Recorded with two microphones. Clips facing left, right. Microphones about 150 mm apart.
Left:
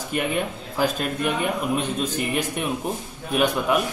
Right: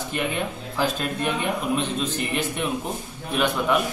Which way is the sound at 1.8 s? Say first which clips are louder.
Left 1 dB; 10° left (ahead or behind).